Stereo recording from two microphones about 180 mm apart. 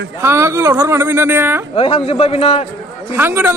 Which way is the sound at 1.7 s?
30° left (ahead or behind).